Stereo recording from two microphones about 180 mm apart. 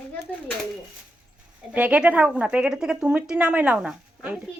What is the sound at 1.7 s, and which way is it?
Speech, 5° right (ahead or behind).